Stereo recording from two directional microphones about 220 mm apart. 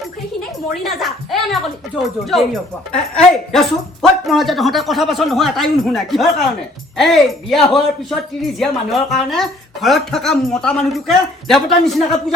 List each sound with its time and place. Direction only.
0.9 s a woman's voice: centre (ahead or behind)